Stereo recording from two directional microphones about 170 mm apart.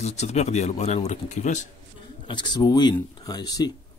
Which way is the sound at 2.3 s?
25° left (ahead or behind).